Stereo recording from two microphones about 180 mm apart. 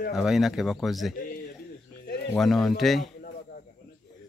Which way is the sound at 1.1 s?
50° left (ahead or behind).